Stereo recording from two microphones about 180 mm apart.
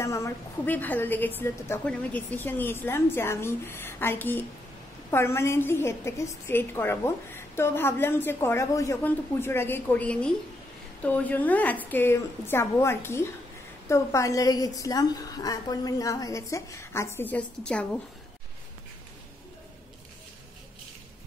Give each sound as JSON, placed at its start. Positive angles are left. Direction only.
{"t": 0.0, "sound": "a woman's voice", "side_deg": 15}